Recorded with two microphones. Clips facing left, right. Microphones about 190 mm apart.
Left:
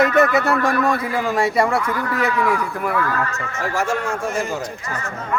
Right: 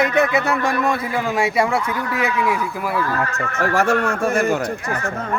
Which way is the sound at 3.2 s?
55° right (ahead or behind).